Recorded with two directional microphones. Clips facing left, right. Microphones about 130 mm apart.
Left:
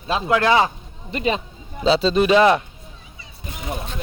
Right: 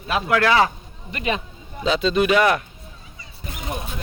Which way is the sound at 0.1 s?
20° left (ahead or behind).